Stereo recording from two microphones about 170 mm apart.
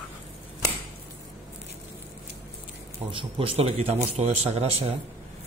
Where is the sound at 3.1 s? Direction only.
30° right (ahead or behind).